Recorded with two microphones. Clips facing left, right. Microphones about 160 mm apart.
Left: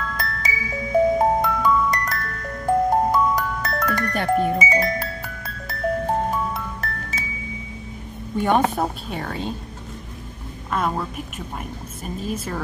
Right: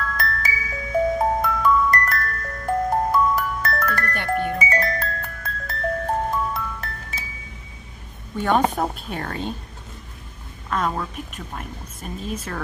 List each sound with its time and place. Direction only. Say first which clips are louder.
0.5 s glockenspiel: left 3 dB; 20° left (ahead or behind)
4.6 s music: left 2 dB; 10° left (ahead or behind)
8.4 s a woman's voice: left 1 dB; 10° left (ahead or behind)
10.7 s a woman's voice: left 1 dB; 10° left (ahead or behind)